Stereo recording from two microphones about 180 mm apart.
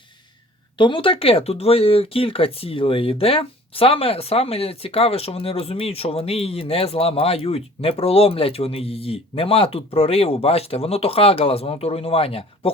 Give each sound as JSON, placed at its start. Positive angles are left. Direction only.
{"t": 0.8, "sound": "speech", "side_deg": 30}